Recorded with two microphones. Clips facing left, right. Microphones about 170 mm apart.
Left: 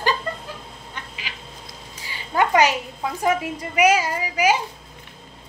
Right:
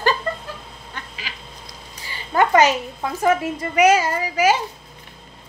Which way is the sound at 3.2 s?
10° left (ahead or behind).